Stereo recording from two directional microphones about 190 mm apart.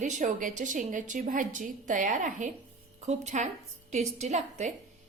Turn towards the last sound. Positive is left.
turn(degrees=-40)  # may be behind; listen again after turning